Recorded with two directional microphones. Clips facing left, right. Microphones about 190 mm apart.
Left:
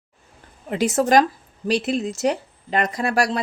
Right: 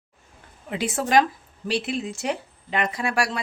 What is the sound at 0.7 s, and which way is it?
Speech, 40° left (ahead or behind).